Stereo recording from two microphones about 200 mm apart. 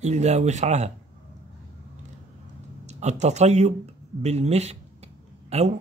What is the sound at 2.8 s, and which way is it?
Speech, 35° right (ahead or behind).